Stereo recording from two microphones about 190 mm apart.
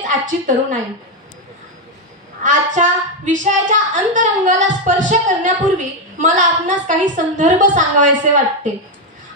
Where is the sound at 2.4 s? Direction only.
40° right (ahead or behind).